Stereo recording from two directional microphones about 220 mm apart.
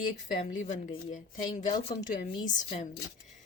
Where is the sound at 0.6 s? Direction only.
35° left (ahead or behind).